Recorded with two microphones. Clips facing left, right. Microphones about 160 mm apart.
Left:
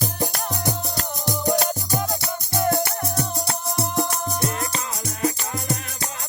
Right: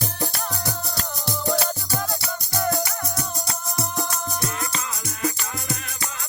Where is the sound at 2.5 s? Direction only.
25° left (ahead or behind).